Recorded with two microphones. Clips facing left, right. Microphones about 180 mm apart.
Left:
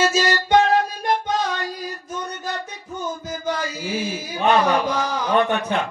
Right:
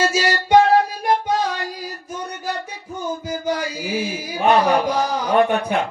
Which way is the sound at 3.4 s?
10° right (ahead or behind).